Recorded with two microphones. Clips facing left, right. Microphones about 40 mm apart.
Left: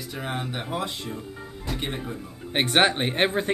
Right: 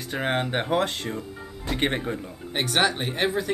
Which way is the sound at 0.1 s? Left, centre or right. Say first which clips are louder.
Right 7 dB; right.